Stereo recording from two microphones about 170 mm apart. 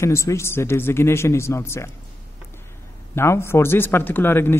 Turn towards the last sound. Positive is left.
turn(degrees=10)  # may be behind; listen again after turning